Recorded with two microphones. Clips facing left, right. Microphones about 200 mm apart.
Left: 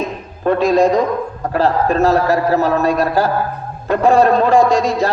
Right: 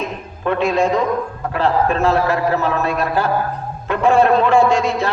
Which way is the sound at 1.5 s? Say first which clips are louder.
Left 2 dB; 40° left (ahead or behind).